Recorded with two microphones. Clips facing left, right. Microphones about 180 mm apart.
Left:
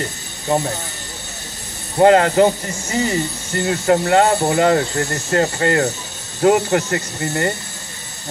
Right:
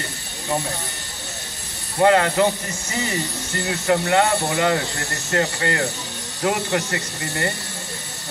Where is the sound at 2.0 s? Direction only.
35° left (ahead or behind).